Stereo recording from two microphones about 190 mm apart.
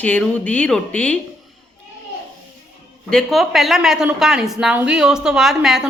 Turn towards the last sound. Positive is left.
turn(degrees=-5)  # may be behind; listen again after turning